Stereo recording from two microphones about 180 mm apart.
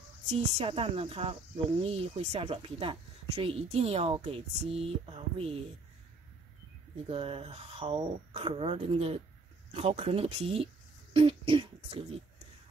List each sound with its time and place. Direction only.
0.3 s speech: 35° right (ahead or behind)
7.1 s speech: 30° right (ahead or behind)
11.1 s beatboxing: 30° right (ahead or behind)